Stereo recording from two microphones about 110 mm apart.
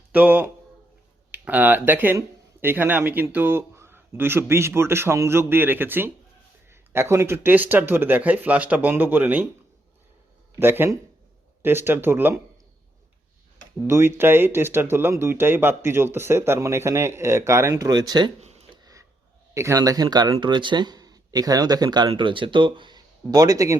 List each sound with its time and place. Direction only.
0.1 s speech: 15° right (ahead or behind)
10.6 s speech: 20° right (ahead or behind)
13.8 s speech: 20° right (ahead or behind); by 18.3 s 40° right (ahead or behind)
18.3 s a sound: 90° right
18.7 s a sound: 35° right (ahead or behind)
19.5 s speech: 25° right (ahead or behind); by 23.0 s 50° right (ahead or behind)
23.3 s speech: 35° right (ahead or behind)